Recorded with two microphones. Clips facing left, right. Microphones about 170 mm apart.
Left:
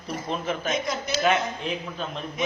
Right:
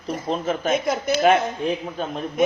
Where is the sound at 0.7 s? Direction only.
55° right (ahead or behind).